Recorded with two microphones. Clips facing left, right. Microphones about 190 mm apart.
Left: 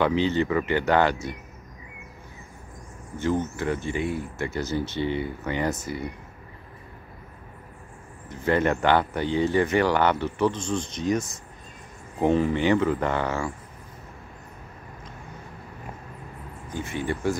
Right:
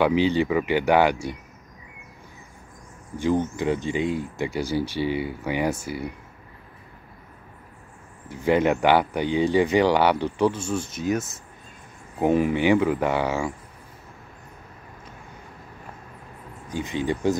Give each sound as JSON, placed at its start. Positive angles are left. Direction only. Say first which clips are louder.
{"t": 0.0, "sound": "speech", "louder": "right 2 dB", "side_deg": -15}
{"t": 3.2, "sound": "speech", "louder": "right 3 dB", "side_deg": -15}
{"t": 8.3, "sound": "speech", "louder": "right 3 dB", "side_deg": -10}
{"t": 16.6, "sound": "speech", "louder": "right 3 dB", "side_deg": -15}